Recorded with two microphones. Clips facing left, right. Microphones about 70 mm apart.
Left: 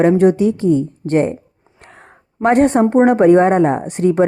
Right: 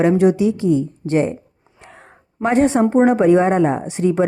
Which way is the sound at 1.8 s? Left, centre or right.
Left.